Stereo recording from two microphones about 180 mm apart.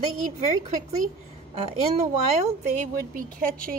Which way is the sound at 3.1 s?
50° right (ahead or behind).